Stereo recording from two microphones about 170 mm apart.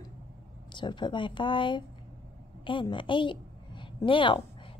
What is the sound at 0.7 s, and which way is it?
A woman's voice, 25° left (ahead or behind).